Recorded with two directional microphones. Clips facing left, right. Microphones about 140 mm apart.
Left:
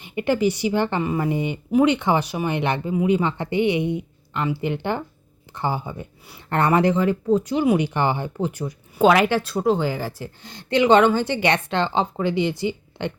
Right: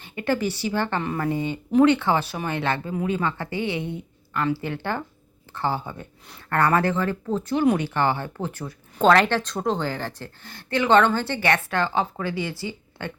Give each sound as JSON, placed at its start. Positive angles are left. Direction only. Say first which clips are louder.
{"t": 0.0, "sound": "speech", "louder": "left 4 dB", "side_deg": 15}